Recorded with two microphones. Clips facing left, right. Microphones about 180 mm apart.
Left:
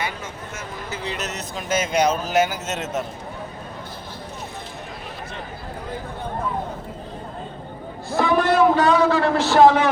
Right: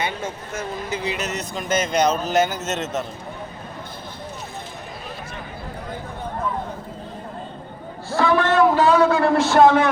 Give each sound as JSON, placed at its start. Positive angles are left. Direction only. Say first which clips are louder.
{"t": 0.0, "sound": "speech", "louder": "right 3 dB", "side_deg": -30}
{"t": 0.9, "sound": "a sound", "louder": "right 3 dB", "side_deg": -15}
{"t": 1.1, "sound": "speech", "louder": "right 2 dB", "side_deg": 0}
{"t": 8.1, "sound": "speech", "louder": "even", "side_deg": 20}
{"t": 8.7, "sound": "a man's voice", "louder": "right 1 dB", "side_deg": -5}